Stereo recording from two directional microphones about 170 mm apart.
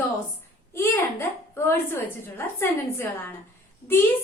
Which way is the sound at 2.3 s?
15° left (ahead or behind).